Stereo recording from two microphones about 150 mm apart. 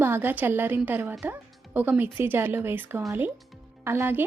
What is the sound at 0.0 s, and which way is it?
A woman's voice, 15° right (ahead or behind).